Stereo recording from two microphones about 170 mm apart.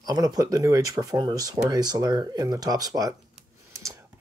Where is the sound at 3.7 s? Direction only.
15° right (ahead or behind).